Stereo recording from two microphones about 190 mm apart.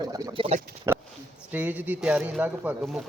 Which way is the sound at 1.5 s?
10° right (ahead or behind).